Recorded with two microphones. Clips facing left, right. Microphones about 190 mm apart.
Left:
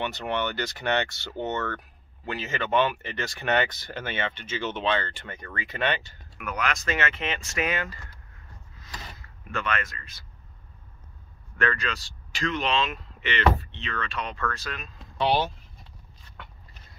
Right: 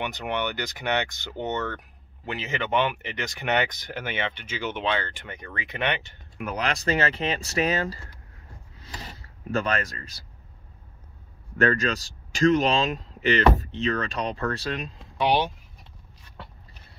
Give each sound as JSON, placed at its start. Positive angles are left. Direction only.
{"t": 0.0, "sound": "speech", "side_deg": -15}
{"t": 8.8, "sound": "power windows", "side_deg": -35}
{"t": 11.5, "sound": "speech", "side_deg": -40}
{"t": 15.1, "sound": "speech", "side_deg": -15}
{"t": 16.4, "sound": "a sound", "side_deg": -35}